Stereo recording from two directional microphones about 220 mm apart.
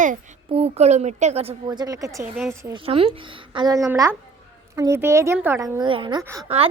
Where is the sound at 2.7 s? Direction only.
25° right (ahead or behind).